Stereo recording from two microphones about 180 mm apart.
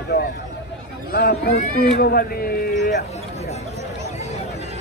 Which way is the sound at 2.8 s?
70° left (ahead or behind).